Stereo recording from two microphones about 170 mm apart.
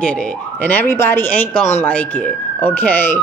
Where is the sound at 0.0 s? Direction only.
5° left (ahead or behind).